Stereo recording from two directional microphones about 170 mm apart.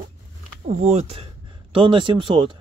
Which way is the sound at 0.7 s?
40° right (ahead or behind).